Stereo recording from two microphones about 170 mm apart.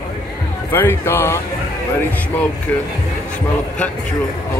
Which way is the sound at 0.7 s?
15° left (ahead or behind).